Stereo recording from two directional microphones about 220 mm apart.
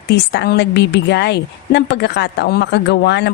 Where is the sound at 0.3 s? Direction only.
50° left (ahead or behind).